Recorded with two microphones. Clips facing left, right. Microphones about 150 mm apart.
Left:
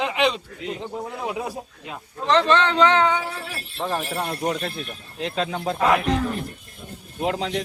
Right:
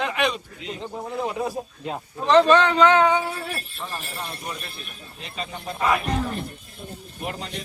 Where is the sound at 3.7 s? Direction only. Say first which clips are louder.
Left 8 dB; 70° left (ahead or behind).